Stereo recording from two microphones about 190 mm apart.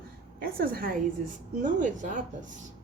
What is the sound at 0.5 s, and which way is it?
A woman's voice, 50° right (ahead or behind).